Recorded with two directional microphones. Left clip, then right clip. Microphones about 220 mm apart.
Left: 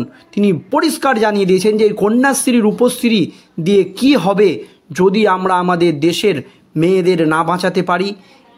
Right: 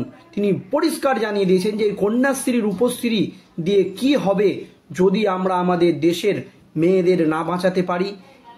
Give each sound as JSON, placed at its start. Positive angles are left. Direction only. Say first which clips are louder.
{"t": 0.3, "sound": "speech", "louder": "left 5 dB", "side_deg": 40}